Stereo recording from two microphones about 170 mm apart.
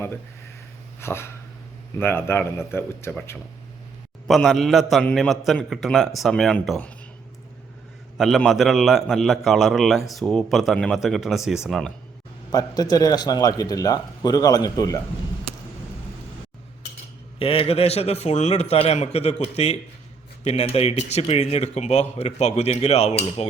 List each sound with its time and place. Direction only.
0.9 s a sound: 15° left (ahead or behind)
2.0 s speech: 10° left (ahead or behind)
4.3 s a man's voice: centre (ahead or behind)
8.2 s a man's voice: centre (ahead or behind)
12.5 s a man's voice: 20° left (ahead or behind)
17.4 s speech: 35° left (ahead or behind)